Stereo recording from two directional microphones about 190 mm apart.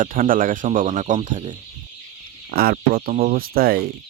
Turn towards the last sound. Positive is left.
turn(degrees=-55)  # may be behind; listen again after turning